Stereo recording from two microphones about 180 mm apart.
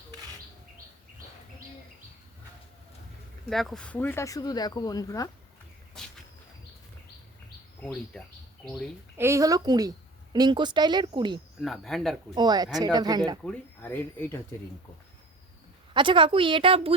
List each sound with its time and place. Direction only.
3.5 s speech: centre (ahead or behind); by 5.3 s 20° left (ahead or behind)
8.1 s speech: 5° left (ahead or behind)
9.1 s speech: 15° right (ahead or behind)
11.6 s speech: centre (ahead or behind)
12.3 s speech: 25° right (ahead or behind)
13.4 s speech: 10° left (ahead or behind)
15.9 s speech: 25° right (ahead or behind)